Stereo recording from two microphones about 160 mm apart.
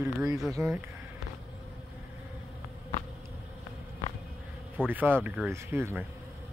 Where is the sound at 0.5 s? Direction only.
15° right (ahead or behind).